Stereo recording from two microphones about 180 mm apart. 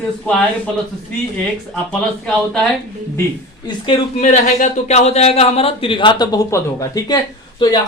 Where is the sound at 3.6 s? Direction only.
30° left (ahead or behind).